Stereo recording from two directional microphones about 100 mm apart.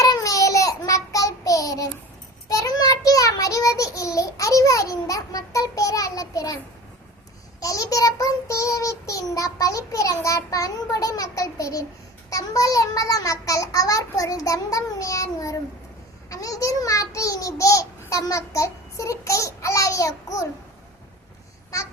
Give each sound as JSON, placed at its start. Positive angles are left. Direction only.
{"t": 0.0, "sound": "child singing", "side_deg": 35}
{"t": 7.6, "sound": "child singing", "side_deg": 35}